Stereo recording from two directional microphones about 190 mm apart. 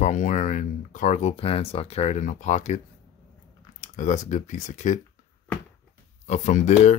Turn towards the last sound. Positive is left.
turn(degrees=40)  # may be behind; listen again after turning